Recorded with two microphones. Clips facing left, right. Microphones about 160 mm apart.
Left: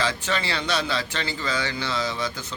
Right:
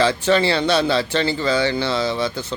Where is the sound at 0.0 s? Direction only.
30° right (ahead or behind).